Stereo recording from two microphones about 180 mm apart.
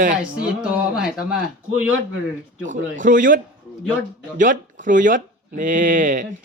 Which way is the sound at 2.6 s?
45° right (ahead or behind).